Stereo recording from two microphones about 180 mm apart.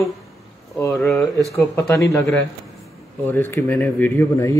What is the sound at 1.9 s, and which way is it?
A man's voice, 15° left (ahead or behind).